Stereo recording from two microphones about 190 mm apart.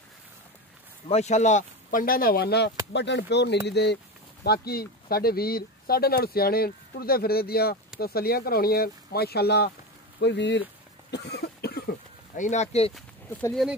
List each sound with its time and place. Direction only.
1.0 s speech: 35° left (ahead or behind); by 10.6 s 65° left (ahead or behind)
11.1 s cough: 60° left (ahead or behind)
12.4 s speech: 40° left (ahead or behind)
12.9 s speech: 5° left (ahead or behind)